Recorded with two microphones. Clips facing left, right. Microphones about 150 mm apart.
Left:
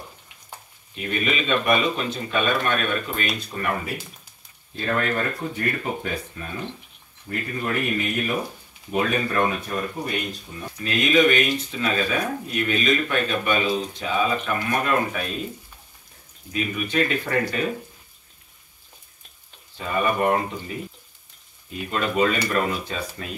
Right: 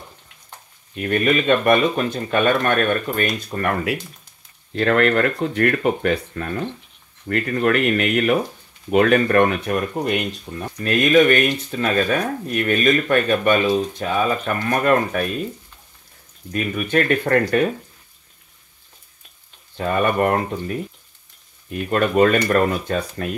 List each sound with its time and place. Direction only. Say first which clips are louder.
0.9 s speech: right 7 dB; 55° right (ahead or behind)
4.7 s speech: right 8 dB; 75° right (ahead or behind)
10.5 s speech: right 6 dB; 60° right (ahead or behind)
16.5 s speech: right 4 dB; 50° right (ahead or behind)
19.8 s speech: right 4 dB; 60° right (ahead or behind)